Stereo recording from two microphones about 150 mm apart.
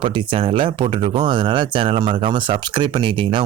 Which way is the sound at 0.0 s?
35° right (ahead or behind).